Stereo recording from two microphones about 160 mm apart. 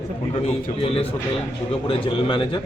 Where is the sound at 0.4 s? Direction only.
35° left (ahead or behind).